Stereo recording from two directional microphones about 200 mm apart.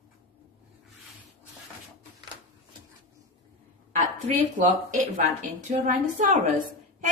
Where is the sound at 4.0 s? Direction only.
40° right (ahead or behind).